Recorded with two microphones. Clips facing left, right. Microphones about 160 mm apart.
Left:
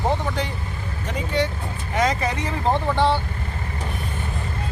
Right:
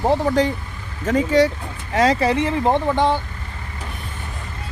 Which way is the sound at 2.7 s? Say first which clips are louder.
Even; 15° right (ahead or behind).